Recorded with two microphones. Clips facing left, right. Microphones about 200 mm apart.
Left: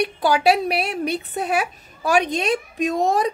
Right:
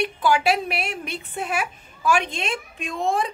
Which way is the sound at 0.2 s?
35° left (ahead or behind).